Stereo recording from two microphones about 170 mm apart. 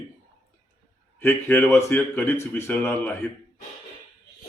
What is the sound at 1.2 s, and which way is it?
A man's voice, 10° left (ahead or behind).